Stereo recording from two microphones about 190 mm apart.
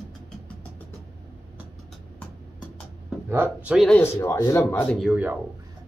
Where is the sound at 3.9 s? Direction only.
15° left (ahead or behind); by 5.4 s 5° right (ahead or behind).